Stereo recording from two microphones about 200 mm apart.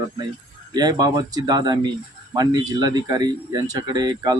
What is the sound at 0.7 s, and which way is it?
A man's voice, 20° right (ahead or behind).